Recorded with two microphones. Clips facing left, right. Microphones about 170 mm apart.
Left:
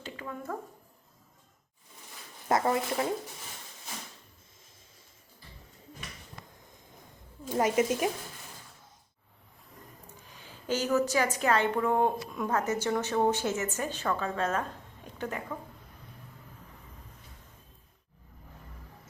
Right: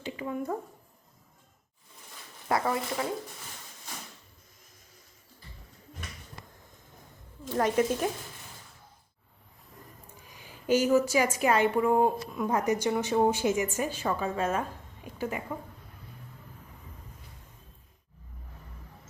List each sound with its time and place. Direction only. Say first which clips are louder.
0.0 s speech: right 6 dB; 15° right (ahead or behind)
2.5 s speech: left 2 dB; 25° left (ahead or behind)
7.4 s a woman's voice: even; 10° left (ahead or behind)
10.2 s a sound: right 5 dB; 10° right (ahead or behind)
11.3 s a woman's voice: right 2 dB; 10° right (ahead or behind)